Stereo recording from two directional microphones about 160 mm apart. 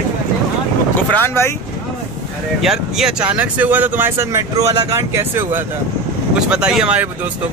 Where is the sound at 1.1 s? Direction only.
15° left (ahead or behind).